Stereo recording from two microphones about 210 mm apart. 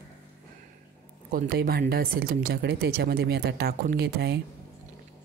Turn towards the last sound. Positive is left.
turn(degrees=-50)  # may be behind; listen again after turning